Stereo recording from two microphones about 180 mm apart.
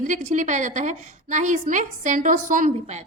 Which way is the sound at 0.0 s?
40° right (ahead or behind).